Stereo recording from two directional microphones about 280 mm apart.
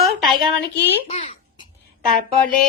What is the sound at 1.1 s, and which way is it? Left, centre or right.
Speech, left.